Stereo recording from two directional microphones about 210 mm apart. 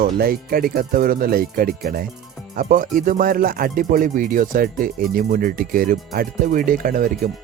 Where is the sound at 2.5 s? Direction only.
40° right (ahead or behind).